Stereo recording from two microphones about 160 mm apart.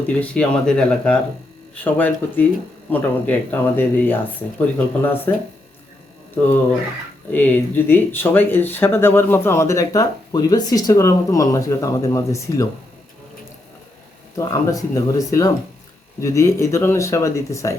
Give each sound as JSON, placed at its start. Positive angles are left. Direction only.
{"t": 0.2, "sound": "speech", "side_deg": 5}
{"t": 6.4, "sound": "speech", "side_deg": 15}
{"t": 14.3, "sound": "speech", "side_deg": 20}